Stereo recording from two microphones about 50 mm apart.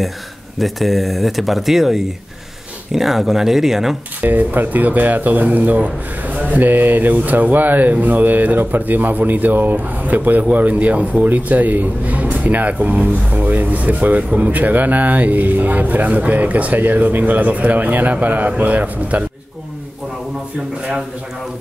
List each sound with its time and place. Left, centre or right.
0.6 s speech: centre
4.2 s a man's voice: right